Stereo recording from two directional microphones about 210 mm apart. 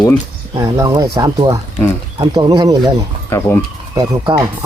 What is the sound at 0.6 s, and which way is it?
Speech, 15° right (ahead or behind).